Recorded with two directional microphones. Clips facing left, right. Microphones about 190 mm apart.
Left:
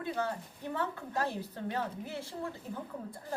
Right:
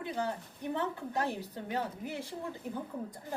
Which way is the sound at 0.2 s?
15° right (ahead or behind).